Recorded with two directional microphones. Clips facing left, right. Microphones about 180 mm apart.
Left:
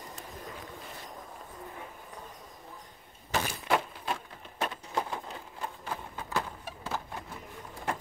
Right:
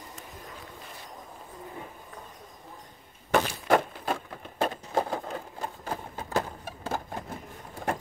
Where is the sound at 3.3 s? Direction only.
50° right (ahead or behind).